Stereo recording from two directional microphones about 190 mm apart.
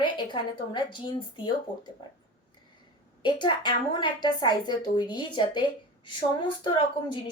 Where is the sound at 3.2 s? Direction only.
25° left (ahead or behind).